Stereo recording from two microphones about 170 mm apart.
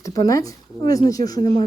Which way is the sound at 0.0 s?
20° left (ahead or behind).